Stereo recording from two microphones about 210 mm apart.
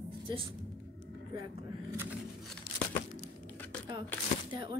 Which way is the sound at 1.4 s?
10° right (ahead or behind).